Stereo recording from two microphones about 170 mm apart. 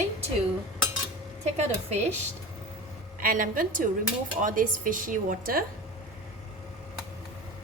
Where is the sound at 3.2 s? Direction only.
55° right (ahead or behind).